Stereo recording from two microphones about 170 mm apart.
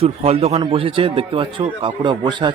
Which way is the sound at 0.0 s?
35° right (ahead or behind).